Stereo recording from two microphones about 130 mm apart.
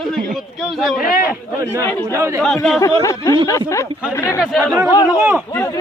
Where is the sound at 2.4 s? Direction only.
Centre (ahead or behind).